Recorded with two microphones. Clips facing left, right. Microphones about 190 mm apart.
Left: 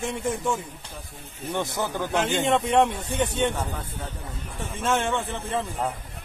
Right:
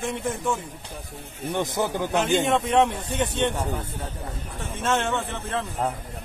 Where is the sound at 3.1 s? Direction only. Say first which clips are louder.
Even; 10° left (ahead or behind).